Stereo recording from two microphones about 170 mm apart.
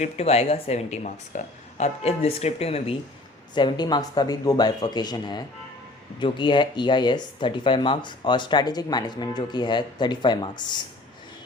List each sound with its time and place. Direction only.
0.0 s speech: 35° left (ahead or behind)
3.5 s speech: 25° left (ahead or behind)